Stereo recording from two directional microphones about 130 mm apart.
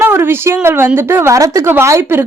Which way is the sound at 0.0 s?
20° right (ahead or behind).